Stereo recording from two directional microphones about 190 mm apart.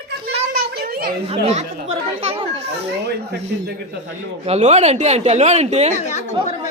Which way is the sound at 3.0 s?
60° right (ahead or behind).